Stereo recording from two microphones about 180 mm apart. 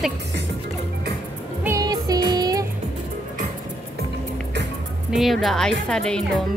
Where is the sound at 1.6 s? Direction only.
15° right (ahead or behind).